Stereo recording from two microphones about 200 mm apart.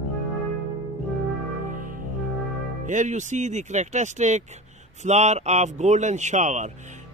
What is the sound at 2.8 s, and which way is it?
A man's voice, 40° right (ahead or behind).